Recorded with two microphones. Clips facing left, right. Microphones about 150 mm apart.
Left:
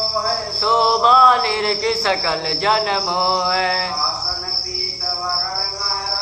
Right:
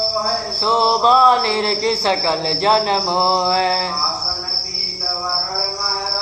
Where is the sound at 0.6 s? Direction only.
30° right (ahead or behind).